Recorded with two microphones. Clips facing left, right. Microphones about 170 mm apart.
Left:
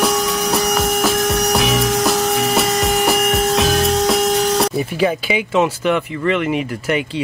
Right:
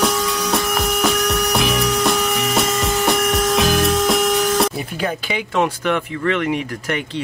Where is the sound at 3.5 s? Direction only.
Centre (ahead or behind).